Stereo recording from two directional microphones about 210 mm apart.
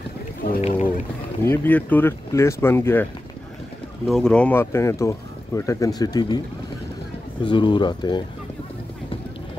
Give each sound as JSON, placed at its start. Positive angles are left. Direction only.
{"t": 0.4, "sound": "boat", "side_deg": 35}
{"t": 1.4, "sound": "speech", "side_deg": 10}
{"t": 4.1, "sound": "speech", "side_deg": 5}
{"t": 7.4, "sound": "speech", "side_deg": 20}